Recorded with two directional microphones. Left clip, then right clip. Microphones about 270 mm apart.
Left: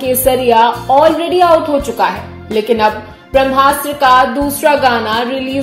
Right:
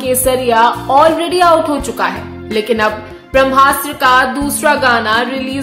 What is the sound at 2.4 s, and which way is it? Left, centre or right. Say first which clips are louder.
Speech: left 2 dB; centre.